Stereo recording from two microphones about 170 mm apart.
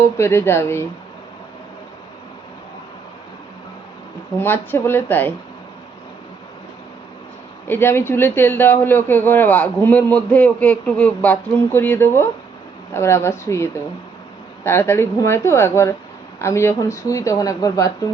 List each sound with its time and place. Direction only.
0.0 s a man's voice: 15° left (ahead or behind)
4.4 s a man's voice: 10° left (ahead or behind)
7.7 s a man's voice: 15° left (ahead or behind)